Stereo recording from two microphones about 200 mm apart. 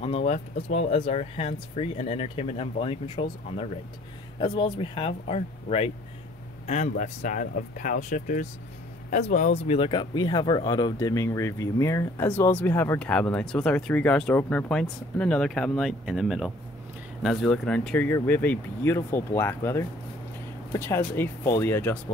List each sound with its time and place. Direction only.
0.0 s speech: 30° left (ahead or behind); by 21.9 s 10° left (ahead or behind)